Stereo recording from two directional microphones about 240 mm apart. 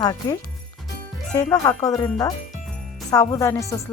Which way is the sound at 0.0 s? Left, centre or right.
Centre.